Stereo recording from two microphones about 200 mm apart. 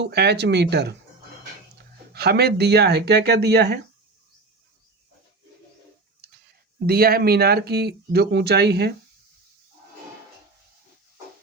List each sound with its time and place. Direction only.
0.0 s speech: 55° right (ahead or behind)
2.1 s speech: 50° right (ahead or behind)
6.8 s speech: 50° right (ahead or behind)